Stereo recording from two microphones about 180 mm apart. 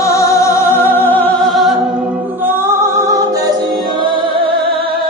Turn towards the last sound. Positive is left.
turn(degrees=-25)  # may be behind; listen again after turning